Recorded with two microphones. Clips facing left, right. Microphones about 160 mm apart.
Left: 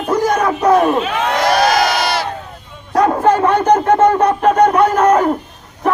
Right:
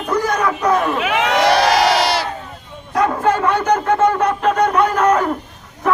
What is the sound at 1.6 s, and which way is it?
Battle cry, 30° right (ahead or behind).